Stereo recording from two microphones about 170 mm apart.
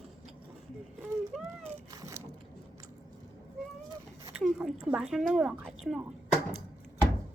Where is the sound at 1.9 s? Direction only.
20° right (ahead or behind).